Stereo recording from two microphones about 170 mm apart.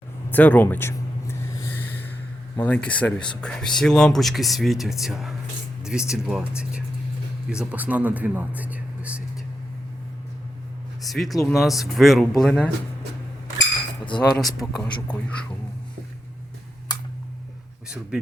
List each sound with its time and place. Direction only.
0.3 s a sound: 10° left (ahead or behind)
2.6 s speech: 10° left (ahead or behind); by 9.2 s 10° right (ahead or behind)
11.0 s speech: centre (ahead or behind)
14.0 s speech: 30° left (ahead or behind)
14.3 s speech: 5° left (ahead or behind)
17.8 s a man's voice: 5° right (ahead or behind)